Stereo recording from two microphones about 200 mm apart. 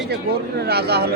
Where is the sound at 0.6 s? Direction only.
55° right (ahead or behind).